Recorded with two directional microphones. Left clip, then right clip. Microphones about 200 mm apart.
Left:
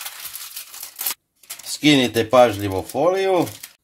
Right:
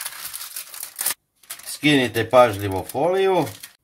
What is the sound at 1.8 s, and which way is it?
Speech, 40° left (ahead or behind).